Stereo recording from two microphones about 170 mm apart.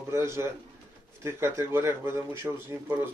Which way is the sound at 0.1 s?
15° right (ahead or behind).